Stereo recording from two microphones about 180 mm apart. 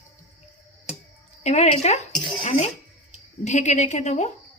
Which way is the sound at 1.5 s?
40° left (ahead or behind).